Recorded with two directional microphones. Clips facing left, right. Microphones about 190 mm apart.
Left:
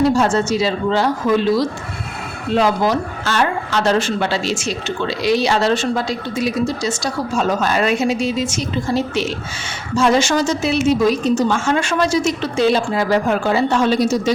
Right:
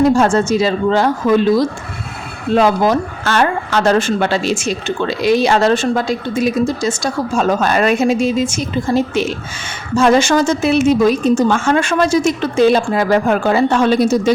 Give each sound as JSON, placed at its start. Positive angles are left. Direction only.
{"t": 0.0, "sound": "speech", "side_deg": -50}
{"t": 2.6, "sound": "speech", "side_deg": -50}